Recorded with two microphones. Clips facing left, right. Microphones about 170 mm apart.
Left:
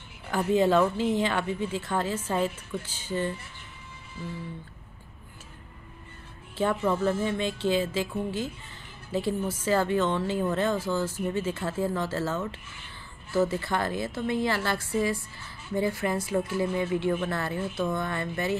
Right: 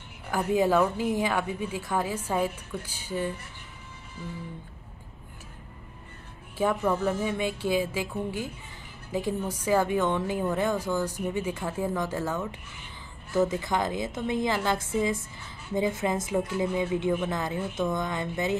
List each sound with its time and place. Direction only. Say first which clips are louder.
0.3 s a woman's voice: left 1 dB; 10° right (ahead or behind)
6.6 s a woman's voice: even; 10° right (ahead or behind)